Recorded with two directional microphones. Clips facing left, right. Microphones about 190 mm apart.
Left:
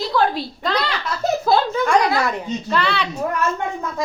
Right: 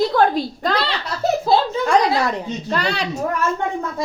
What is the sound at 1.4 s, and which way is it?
A woman's voice, 25° right (ahead or behind).